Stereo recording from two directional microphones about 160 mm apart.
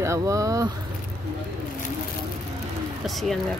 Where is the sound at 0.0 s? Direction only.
20° right (ahead or behind).